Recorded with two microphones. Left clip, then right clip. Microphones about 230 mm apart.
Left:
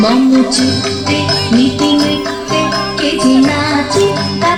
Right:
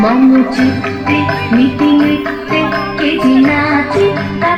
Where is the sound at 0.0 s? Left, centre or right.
Left.